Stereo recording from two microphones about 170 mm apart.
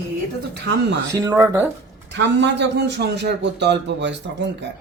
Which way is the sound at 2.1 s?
90° right.